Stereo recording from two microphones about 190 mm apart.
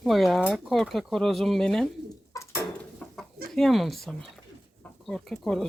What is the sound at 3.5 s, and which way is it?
Speech, centre (ahead or behind).